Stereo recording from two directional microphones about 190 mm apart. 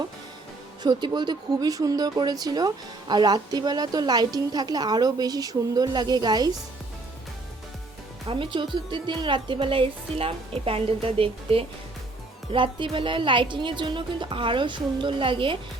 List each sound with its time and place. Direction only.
0.8 s speech: 25° right (ahead or behind)
8.3 s speech: 25° right (ahead or behind)